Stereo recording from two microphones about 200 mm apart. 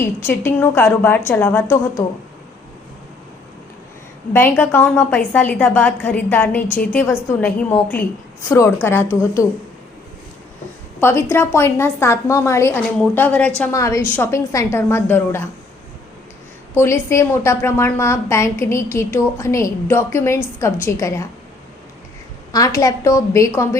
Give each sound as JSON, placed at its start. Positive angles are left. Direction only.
{"t": 0.0, "sound": "a woman's voice", "side_deg": 10}
{"t": 4.3, "sound": "a woman's voice", "side_deg": 10}
{"t": 11.0, "sound": "a woman's voice", "side_deg": 10}
{"t": 16.7, "sound": "a woman's voice", "side_deg": 15}
{"t": 22.5, "sound": "a woman's voice", "side_deg": 15}